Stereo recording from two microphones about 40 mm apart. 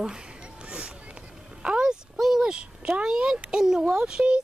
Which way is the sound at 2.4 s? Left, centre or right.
Right.